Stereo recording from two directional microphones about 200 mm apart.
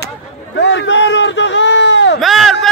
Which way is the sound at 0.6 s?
60° left (ahead or behind).